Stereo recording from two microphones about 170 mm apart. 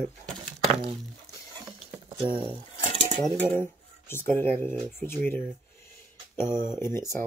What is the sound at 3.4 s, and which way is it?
Speech, 15° left (ahead or behind).